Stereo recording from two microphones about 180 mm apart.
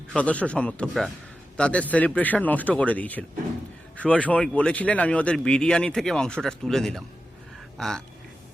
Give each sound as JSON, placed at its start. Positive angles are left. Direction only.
{"t": 0.1, "sound": "speech", "side_deg": 5}